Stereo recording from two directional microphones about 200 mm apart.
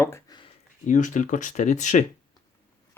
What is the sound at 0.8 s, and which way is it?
Speech, 40° left (ahead or behind).